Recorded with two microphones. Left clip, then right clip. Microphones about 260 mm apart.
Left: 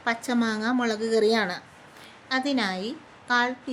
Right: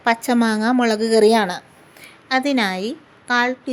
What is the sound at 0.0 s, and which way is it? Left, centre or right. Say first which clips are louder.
A woman's voice: right 8 dB; right.